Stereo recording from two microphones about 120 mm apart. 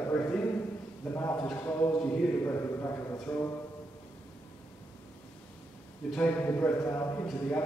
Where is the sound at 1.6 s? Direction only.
20° left (ahead or behind).